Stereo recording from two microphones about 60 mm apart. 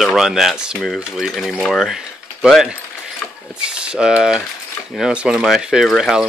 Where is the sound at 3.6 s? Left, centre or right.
Centre.